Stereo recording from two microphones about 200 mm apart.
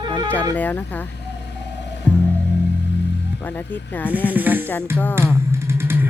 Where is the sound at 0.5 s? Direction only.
10° left (ahead or behind).